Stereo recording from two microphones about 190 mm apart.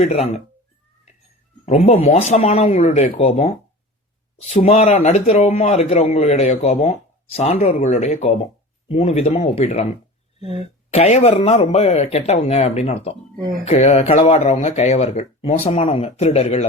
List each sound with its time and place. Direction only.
0.0 s speech: 35° left (ahead or behind)
1.6 s speech: 35° left (ahead or behind)